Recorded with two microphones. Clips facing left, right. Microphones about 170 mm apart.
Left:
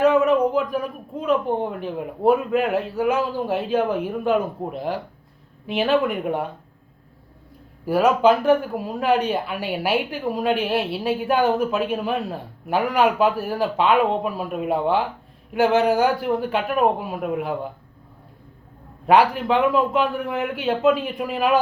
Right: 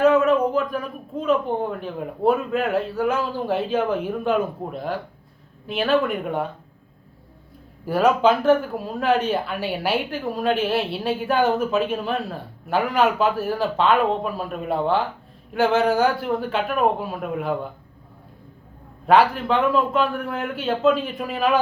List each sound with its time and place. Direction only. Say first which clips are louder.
0.0 s a sound: even; 15° left (ahead or behind)
2.0 s a woman's voice: left 2 dB; 10° left (ahead or behind)
7.9 s a woman's voice: left 1 dB; 10° left (ahead or behind)
19.0 s a woman's voice: even; 15° left (ahead or behind)